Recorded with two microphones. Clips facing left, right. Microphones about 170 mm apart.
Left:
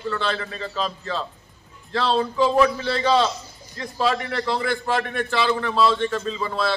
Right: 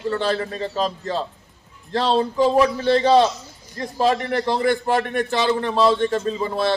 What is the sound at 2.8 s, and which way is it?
A man's voice, 45° right (ahead or behind).